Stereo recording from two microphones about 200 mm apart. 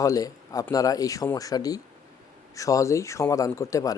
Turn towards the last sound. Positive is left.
turn(degrees=15)  # may be behind; listen again after turning